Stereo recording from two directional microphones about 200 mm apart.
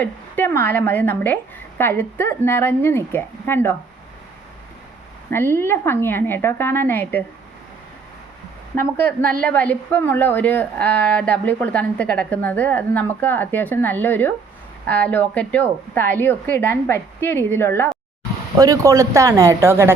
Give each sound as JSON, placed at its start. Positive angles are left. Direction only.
{"t": 0.0, "sound": "a woman's voice", "side_deg": 10}
{"t": 5.3, "sound": "a woman's voice", "side_deg": 10}
{"t": 8.7, "sound": "a woman's voice", "side_deg": 10}
{"t": 18.5, "sound": "speech", "side_deg": -15}